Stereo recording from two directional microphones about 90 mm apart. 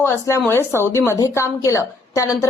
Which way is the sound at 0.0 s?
35° left (ahead or behind).